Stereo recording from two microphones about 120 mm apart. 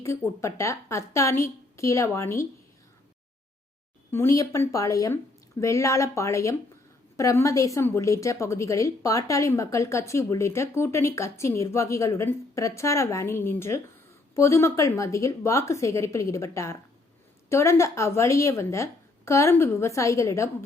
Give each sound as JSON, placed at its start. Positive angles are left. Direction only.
{"t": 0.0, "sound": "a woman's voice", "side_deg": 25}
{"t": 4.1, "sound": "a woman's voice", "side_deg": 25}